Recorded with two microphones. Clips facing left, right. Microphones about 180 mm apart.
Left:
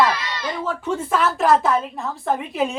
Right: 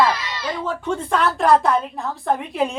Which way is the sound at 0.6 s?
5° left (ahead or behind).